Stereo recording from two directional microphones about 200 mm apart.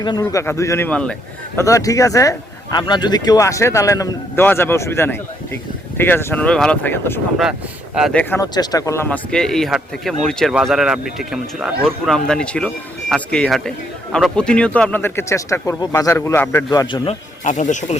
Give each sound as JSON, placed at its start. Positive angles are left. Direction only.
{"t": 0.0, "sound": "speech", "side_deg": 20}
{"t": 17.4, "sound": "speech", "side_deg": 40}